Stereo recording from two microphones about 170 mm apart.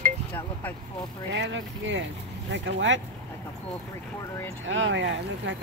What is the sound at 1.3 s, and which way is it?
Speech, 90° right.